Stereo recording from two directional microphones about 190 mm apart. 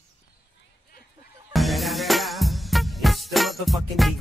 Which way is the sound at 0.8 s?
50° left (ahead or behind).